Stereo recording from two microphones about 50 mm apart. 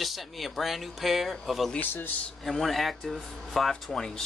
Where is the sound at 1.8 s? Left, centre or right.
Left.